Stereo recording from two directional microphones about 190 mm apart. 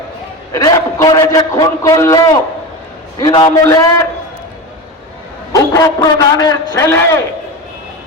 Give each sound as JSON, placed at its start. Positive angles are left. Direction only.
{"t": 0.5, "sound": "a man's voice", "side_deg": 15}
{"t": 5.5, "sound": "a man's voice", "side_deg": 15}